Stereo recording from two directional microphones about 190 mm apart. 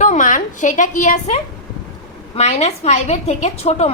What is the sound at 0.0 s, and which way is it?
A woman's voice, 40° left (ahead or behind).